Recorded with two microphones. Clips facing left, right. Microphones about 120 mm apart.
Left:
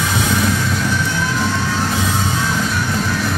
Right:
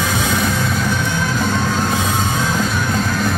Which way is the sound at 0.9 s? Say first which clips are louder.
Even; 50° right (ahead or behind).